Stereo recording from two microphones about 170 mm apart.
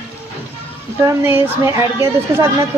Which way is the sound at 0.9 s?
15° right (ahead or behind).